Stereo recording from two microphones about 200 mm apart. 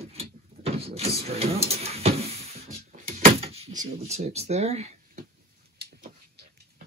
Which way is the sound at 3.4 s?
30° right (ahead or behind).